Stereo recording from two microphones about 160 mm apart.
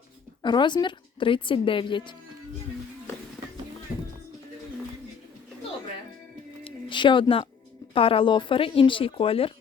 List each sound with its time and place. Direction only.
0.4 s a woman's voice: 30° left (ahead or behind)
6.7 s a sound: 30° left (ahead or behind)
7.9 s a woman's voice: 35° left (ahead or behind)